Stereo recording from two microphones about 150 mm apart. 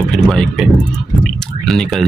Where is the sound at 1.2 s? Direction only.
5° left (ahead or behind).